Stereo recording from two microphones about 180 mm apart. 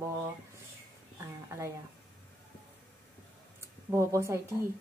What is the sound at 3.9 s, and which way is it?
Speech, 15° right (ahead or behind).